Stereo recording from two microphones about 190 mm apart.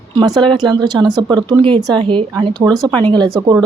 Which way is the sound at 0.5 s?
20° right (ahead or behind).